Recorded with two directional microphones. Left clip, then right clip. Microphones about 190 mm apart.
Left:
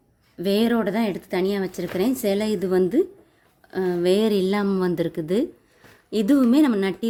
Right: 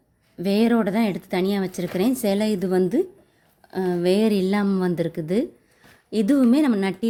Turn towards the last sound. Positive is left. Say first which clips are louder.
# left 2 dB
turn(degrees=0)  # may be behind; listen again after turning